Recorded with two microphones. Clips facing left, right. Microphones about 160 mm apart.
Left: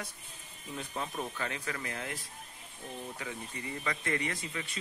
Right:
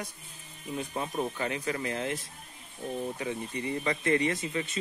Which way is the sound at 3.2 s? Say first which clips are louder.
Right 7 dB; 20° right (ahead or behind).